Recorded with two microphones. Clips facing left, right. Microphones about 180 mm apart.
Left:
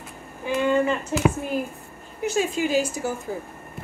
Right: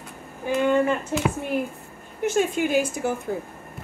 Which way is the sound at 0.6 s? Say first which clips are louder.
Right 1 dB; 50° right (ahead or behind).